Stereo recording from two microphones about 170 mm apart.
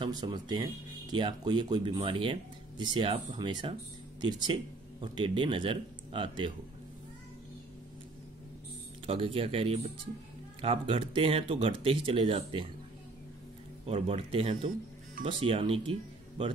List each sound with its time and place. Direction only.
0.0 s speech: 25° right (ahead or behind)
9.0 s speech: 30° right (ahead or behind)
13.8 s speech: 35° right (ahead or behind)